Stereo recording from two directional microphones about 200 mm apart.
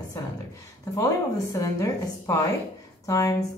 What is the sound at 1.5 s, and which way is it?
Speech, 15° left (ahead or behind).